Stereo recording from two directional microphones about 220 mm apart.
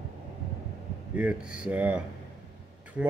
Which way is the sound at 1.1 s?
5° right (ahead or behind).